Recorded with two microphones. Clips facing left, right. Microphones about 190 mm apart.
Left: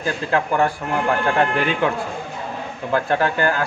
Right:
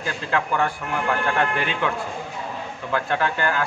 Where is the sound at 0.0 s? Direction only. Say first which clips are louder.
Left 4 dB; 40° left (ahead or behind).